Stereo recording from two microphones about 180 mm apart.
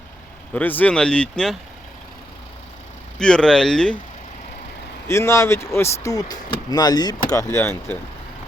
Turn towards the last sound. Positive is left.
turn(degrees=15)  # may be behind; listen again after turning